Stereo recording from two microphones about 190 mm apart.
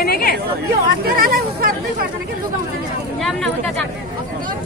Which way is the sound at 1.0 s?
50° right (ahead or behind).